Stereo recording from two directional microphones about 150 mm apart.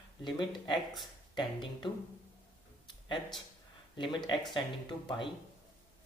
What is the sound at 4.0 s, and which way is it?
Speech, 30° left (ahead or behind).